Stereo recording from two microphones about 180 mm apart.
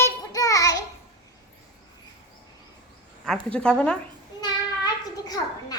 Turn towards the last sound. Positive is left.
turn(degrees=20)  # may be behind; listen again after turning